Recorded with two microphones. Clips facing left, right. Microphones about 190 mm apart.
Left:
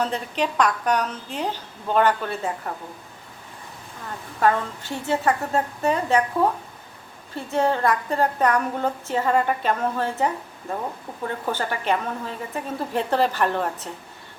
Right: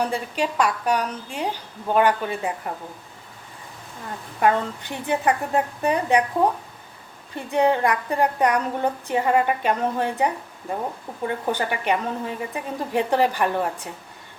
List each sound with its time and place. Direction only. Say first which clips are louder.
0.0 s a woman's voice: even; 10° right (ahead or behind)
4.4 s a woman's voice: right 1 dB; 15° right (ahead or behind)
11.4 s a woman's voice: even; 15° right (ahead or behind)